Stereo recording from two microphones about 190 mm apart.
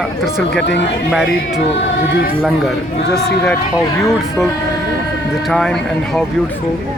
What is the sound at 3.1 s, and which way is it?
Speech, 5° left (ahead or behind).